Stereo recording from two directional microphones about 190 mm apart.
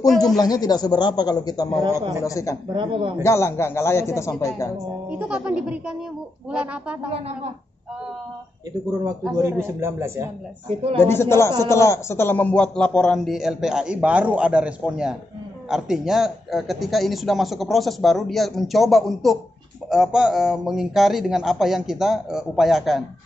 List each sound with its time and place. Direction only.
0.4 s a man's voice: 20° left (ahead or behind)
1.9 s speech: 15° right (ahead or behind)
2.2 s a man's voice: 15° left (ahead or behind)
2.7 s speech: 25° right (ahead or behind)
3.2 s a man's voice: 15° left (ahead or behind)
5.3 s speech: 5° right (ahead or behind)
9.4 s speech: 15° right (ahead or behind)
11.0 s a man's voice: 15° left (ahead or behind)